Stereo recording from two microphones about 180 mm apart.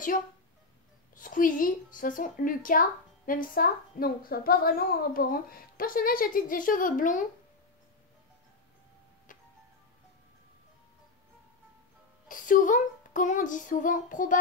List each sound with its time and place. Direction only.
1.1 s speech: 45° left (ahead or behind)
12.3 s child singing: 45° left (ahead or behind)